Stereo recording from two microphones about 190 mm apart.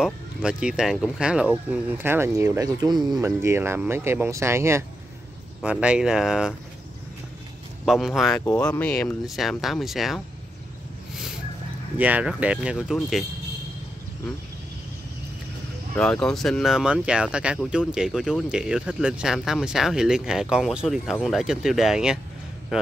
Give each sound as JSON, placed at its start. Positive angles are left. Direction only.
{"t": 0.0, "sound": "speech", "side_deg": -5}
{"t": 7.8, "sound": "speech", "side_deg": 0}
{"t": 12.0, "sound": "speech", "side_deg": -5}
{"t": 16.0, "sound": "speech", "side_deg": 5}